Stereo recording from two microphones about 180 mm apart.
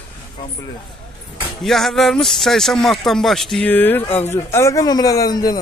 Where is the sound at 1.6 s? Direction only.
Centre (ahead or behind).